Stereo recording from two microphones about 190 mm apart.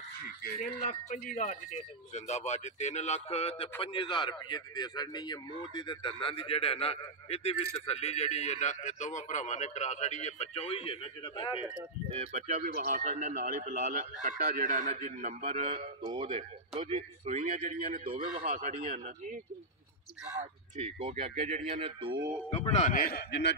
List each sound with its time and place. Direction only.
0.4 s a man's voice: 50° left (ahead or behind); by 11.6 s 25° left (ahead or behind)
12.1 s speech: 35° right (ahead or behind)
18.4 s speech: 45° right (ahead or behind)
20.7 s speech: 35° right (ahead or behind)
22.5 s speech: 35° left (ahead or behind); by 23.5 s 55° left (ahead or behind)